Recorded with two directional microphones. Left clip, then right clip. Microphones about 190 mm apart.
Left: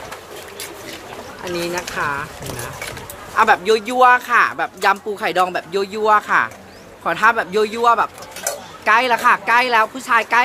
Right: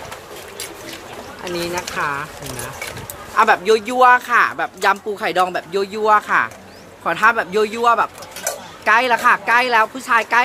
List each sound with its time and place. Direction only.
1.4 s speech: 5° right (ahead or behind)
3.3 s speech: 5° right (ahead or behind)
8.5 s stir: 20° left (ahead or behind)
8.8 s speech: 5° right (ahead or behind)